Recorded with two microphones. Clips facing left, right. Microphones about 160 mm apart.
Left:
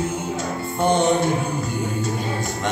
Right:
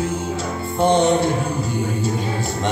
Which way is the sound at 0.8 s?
25° right (ahead or behind).